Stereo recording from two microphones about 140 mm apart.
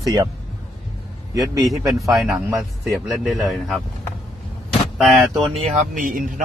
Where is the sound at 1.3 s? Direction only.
25° right (ahead or behind).